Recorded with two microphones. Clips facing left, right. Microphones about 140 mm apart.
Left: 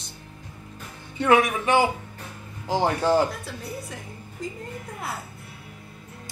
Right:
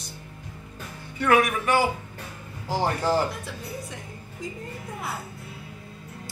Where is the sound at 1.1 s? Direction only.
25° left (ahead or behind).